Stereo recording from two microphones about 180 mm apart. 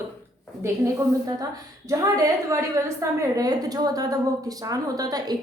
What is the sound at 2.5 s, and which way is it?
A woman's voice, 15° right (ahead or behind).